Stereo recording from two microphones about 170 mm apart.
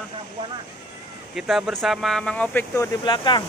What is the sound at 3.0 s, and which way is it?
Speech, 25° left (ahead or behind).